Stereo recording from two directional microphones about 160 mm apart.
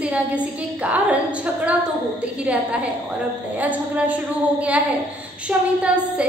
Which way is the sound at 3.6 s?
10° right (ahead or behind).